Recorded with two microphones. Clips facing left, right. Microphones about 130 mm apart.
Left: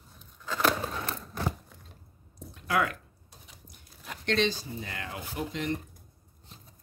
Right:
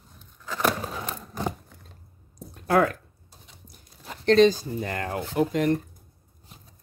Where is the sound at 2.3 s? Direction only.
45° right (ahead or behind).